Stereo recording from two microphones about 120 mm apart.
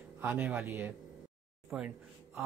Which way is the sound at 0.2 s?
15° right (ahead or behind).